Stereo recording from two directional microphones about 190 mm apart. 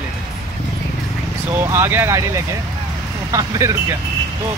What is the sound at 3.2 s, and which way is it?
Speech, 15° right (ahead or behind).